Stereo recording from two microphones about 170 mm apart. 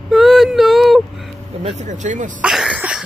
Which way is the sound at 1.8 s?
45° right (ahead or behind).